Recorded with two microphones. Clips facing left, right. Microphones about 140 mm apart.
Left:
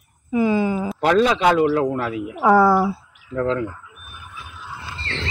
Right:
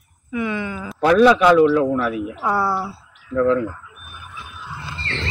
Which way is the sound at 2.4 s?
50° left (ahead or behind).